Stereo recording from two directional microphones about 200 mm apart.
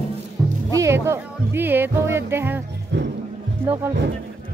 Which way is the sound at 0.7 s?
15° right (ahead or behind).